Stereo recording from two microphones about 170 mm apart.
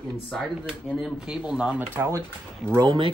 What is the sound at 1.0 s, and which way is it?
Speech, centre (ahead or behind).